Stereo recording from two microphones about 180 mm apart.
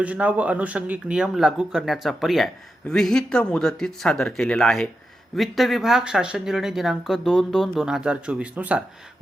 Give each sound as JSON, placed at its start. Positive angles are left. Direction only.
{"t": 0.0, "sound": "speech", "side_deg": -10}